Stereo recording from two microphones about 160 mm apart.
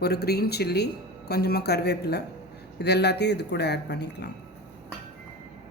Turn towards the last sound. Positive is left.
turn(degrees=90)